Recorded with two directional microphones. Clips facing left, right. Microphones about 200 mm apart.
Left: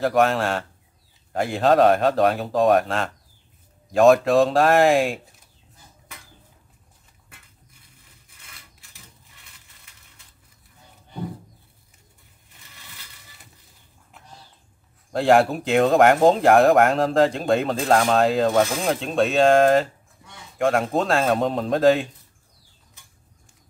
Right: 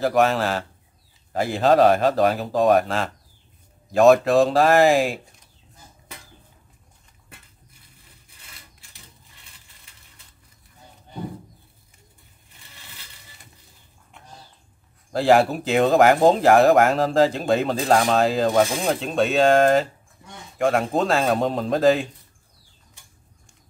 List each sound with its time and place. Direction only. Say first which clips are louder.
0.0 s speech: even; centre (ahead or behind)
14.1 s a sound: right 1 dB; centre (ahead or behind)
15.1 s speech: even; centre (ahead or behind)